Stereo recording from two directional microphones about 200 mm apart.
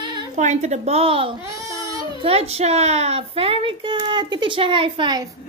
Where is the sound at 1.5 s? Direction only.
15° right (ahead or behind).